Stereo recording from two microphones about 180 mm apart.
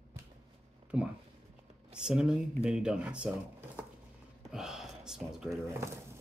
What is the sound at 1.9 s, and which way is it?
Speech, 5° right (ahead or behind).